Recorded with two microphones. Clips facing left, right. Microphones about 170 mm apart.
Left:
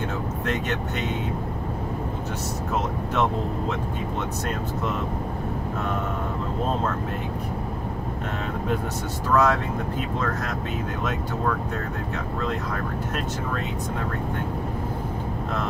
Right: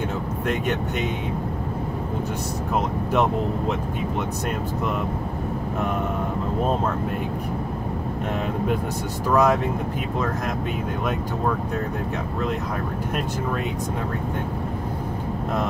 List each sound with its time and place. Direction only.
9.3 s speech: 15° right (ahead or behind)